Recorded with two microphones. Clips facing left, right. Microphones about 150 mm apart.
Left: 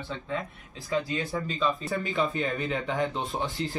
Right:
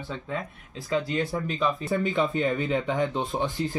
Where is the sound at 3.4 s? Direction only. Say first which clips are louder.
Right 3 dB; 45° right (ahead or behind).